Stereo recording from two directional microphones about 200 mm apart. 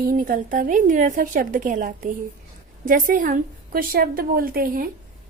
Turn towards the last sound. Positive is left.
turn(degrees=-45)  # may be behind; listen again after turning